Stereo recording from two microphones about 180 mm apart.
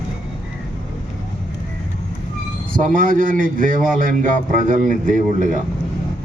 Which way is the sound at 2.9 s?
50° right (ahead or behind).